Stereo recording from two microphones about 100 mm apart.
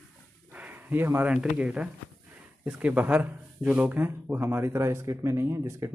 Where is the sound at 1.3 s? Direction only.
10° right (ahead or behind).